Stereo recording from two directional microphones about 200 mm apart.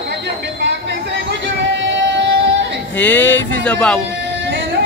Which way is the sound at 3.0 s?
10° left (ahead or behind).